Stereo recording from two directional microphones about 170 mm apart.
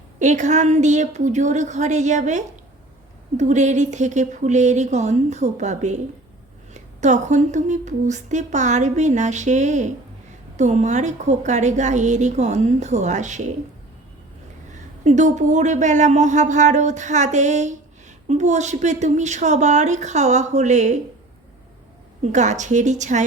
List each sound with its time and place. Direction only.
0.2 s speech: 45° right (ahead or behind)
15.0 s speech: 45° right (ahead or behind)
22.2 s speech: 45° right (ahead or behind)